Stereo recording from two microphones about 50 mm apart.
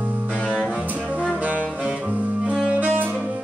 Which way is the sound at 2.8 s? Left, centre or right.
Right.